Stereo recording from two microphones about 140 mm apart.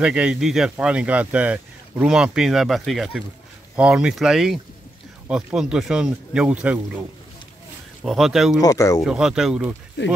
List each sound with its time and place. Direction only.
0.0 s speech: 5° right (ahead or behind)
8.0 s speech: centre (ahead or behind)
8.5 s speech: 25° left (ahead or behind)
9.0 s speech: 5° right (ahead or behind)